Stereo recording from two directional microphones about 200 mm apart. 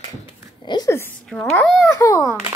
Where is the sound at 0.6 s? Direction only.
20° left (ahead or behind); by 1.9 s 5° left (ahead or behind).